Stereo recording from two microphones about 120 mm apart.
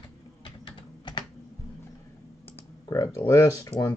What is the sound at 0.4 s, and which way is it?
Typing, 40° left (ahead or behind).